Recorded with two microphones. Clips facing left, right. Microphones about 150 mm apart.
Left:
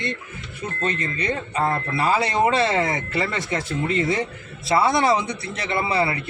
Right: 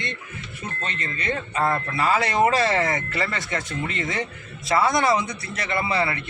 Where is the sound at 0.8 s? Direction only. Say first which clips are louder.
Left 6 dB; 35° left (ahead or behind).